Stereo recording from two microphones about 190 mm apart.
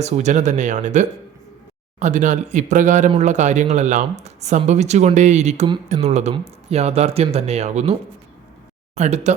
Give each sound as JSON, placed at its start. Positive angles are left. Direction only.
{"t": 0.0, "sound": "speech", "side_deg": -35}
{"t": 9.0, "sound": "speech", "side_deg": -35}